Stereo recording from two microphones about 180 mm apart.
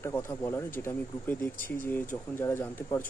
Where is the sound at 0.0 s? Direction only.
15° left (ahead or behind).